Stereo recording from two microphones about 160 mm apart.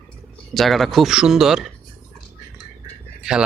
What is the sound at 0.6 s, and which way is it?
Speech, centre (ahead or behind).